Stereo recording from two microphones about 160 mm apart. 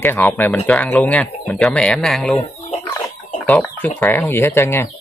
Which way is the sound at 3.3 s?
10° left (ahead or behind).